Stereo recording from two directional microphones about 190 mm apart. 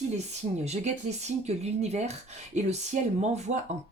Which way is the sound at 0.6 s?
35° right (ahead or behind).